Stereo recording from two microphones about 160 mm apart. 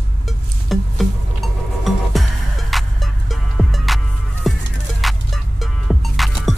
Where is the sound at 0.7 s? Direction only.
Centre (ahead or behind).